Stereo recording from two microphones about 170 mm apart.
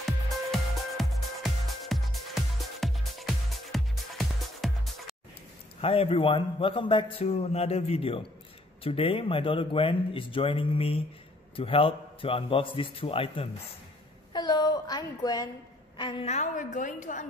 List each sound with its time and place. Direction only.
0.0 s music: centre (ahead or behind)
5.8 s a man's voice: 35° left (ahead or behind)
14.3 s a sound: 25° left (ahead or behind)
16.0 s a woman's voice: 30° left (ahead or behind)
16.3 s a woman's voice: 45° left (ahead or behind)